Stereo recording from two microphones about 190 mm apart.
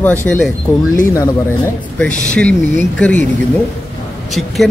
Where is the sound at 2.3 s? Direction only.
5° left (ahead or behind).